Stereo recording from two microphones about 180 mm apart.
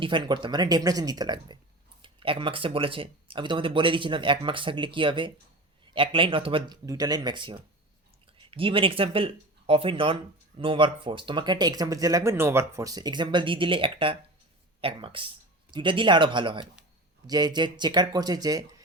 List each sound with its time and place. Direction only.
0.0 s speech: 25° right (ahead or behind)